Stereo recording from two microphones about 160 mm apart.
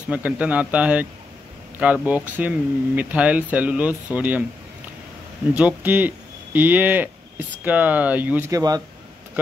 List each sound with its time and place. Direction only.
0.1 s speech: 10° right (ahead or behind)
5.5 s speech: 10° right (ahead or behind)
8.5 s speech: 20° right (ahead or behind)